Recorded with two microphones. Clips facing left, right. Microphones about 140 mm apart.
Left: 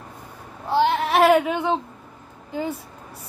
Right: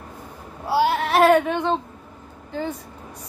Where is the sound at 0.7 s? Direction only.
5° right (ahead or behind); by 1.8 s 10° left (ahead or behind).